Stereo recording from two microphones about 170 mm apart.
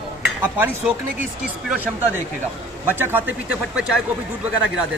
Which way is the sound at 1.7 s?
10° right (ahead or behind).